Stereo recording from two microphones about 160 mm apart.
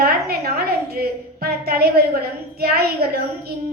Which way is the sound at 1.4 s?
75° right (ahead or behind).